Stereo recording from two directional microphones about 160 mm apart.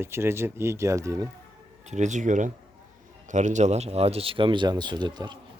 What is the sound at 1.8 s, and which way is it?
A man's voice, 45° right (ahead or behind).